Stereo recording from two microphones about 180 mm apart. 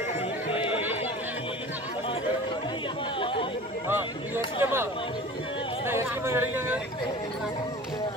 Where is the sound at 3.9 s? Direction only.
10° right (ahead or behind).